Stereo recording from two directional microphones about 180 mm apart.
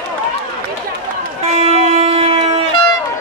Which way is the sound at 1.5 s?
35° right (ahead or behind).